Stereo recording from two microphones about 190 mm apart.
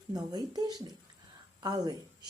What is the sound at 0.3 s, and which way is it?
Speech, 20° right (ahead or behind).